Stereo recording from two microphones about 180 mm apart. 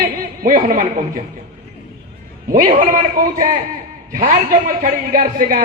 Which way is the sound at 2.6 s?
50° right (ahead or behind).